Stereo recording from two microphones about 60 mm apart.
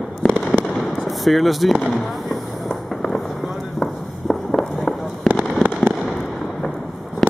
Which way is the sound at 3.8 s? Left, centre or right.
Centre.